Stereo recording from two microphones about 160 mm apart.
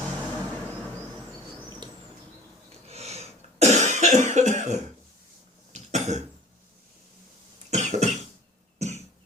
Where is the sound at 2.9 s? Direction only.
40° right (ahead or behind).